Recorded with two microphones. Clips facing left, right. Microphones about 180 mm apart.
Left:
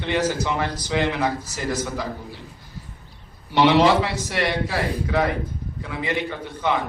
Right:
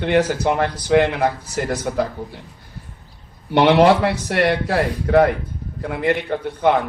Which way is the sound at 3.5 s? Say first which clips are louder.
Right 3 dB; 55° right (ahead or behind).